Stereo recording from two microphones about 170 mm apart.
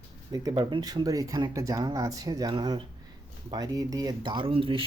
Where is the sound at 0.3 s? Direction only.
20° right (ahead or behind).